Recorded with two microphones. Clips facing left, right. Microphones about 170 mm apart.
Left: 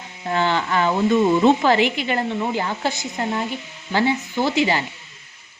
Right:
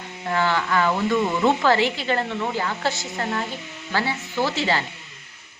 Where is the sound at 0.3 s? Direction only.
25° left (ahead or behind).